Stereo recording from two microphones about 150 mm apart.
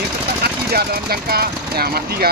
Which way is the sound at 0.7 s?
90° right.